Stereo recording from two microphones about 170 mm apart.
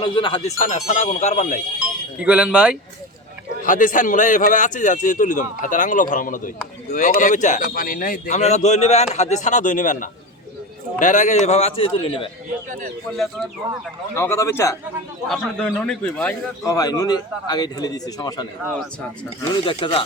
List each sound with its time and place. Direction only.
0.0 s a man's voice: 30° left (ahead or behind)
0.6 s a man's voice: 45° left (ahead or behind)
1.8 s speech: 5° right (ahead or behind)
3.6 s a man's voice: 50° left (ahead or behind)
8.4 s a man's voice: 40° left (ahead or behind)
14.2 s a man's voice: 15° left (ahead or behind)
15.3 s a man's voice: 5° left (ahead or behind)
16.6 s a man's voice: 20° left (ahead or behind)
19.6 s a man's voice: 30° left (ahead or behind)